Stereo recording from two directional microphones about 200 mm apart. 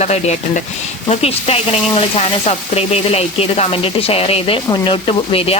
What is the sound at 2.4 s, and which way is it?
Speech, 30° left (ahead or behind).